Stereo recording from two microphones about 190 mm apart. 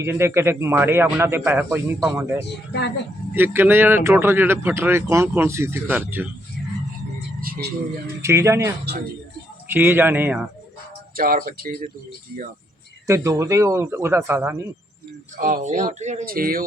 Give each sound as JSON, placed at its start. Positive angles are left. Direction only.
{"t": 0.0, "sound": "speech", "side_deg": -15}
{"t": 7.4, "sound": "vehicle", "side_deg": -50}
{"t": 8.2, "sound": "speech", "side_deg": -15}
{"t": 11.2, "sound": "speech", "side_deg": -50}
{"t": 13.1, "sound": "speech", "side_deg": -15}
{"t": 15.4, "sound": "speech", "side_deg": -45}